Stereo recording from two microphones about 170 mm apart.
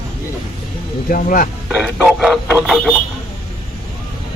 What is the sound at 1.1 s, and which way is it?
Speech, 55° left (ahead or behind).